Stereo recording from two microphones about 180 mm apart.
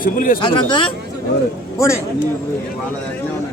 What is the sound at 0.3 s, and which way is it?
Speech, 25° left (ahead or behind).